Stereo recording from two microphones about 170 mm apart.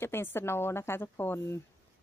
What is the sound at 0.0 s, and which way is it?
Speech, 15° left (ahead or behind).